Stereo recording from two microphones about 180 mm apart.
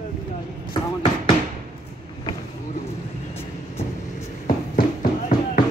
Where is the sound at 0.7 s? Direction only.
30° left (ahead or behind).